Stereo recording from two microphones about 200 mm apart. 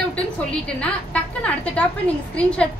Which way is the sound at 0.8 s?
5° left (ahead or behind).